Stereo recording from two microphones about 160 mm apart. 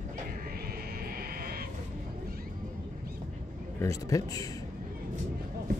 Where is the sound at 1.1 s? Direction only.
65° right (ahead or behind).